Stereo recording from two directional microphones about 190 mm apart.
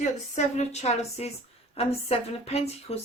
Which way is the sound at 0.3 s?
35° left (ahead or behind).